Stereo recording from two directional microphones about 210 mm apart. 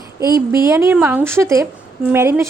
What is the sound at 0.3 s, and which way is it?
A woman's voice, 15° right (ahead or behind).